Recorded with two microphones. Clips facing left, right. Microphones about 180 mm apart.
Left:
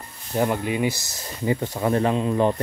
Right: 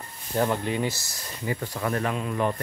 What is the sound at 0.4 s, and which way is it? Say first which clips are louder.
Speech: left 3 dB; 10° left (ahead or behind).